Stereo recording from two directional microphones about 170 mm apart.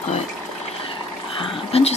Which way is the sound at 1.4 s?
35° left (ahead or behind).